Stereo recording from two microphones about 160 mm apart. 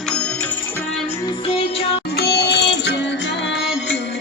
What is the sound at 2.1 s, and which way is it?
Music, 90° left.